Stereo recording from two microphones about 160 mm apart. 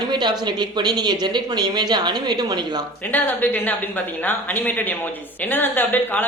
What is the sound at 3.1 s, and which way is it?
Speech, 10° left (ahead or behind).